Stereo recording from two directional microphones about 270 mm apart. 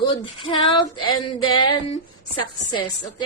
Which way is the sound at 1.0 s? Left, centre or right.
Left.